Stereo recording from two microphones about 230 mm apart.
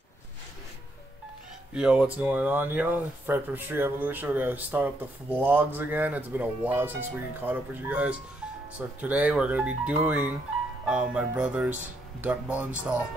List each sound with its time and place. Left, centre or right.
1.7 s speech: centre